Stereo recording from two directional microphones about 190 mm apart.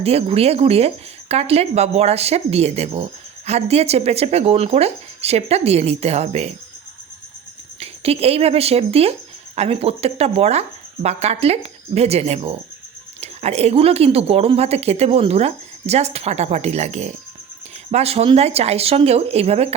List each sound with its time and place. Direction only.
0.0 s speech: 35° right (ahead or behind)
7.8 s speech: 30° right (ahead or behind)